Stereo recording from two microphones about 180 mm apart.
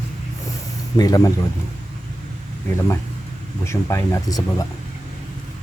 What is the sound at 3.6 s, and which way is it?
Speech, 15° left (ahead or behind).